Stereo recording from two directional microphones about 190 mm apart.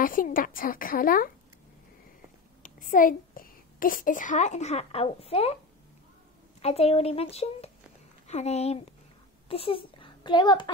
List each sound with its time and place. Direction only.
0.0 s a woman's voice: 45° left (ahead or behind)
2.6 s a child's voice: 45° left (ahead or behind)
6.6 s a child's voice: 35° left (ahead or behind)